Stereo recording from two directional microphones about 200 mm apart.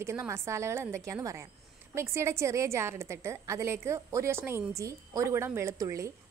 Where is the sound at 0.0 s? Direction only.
15° right (ahead or behind).